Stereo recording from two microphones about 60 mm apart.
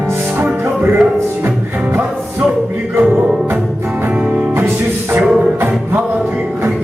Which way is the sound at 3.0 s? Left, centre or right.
Right.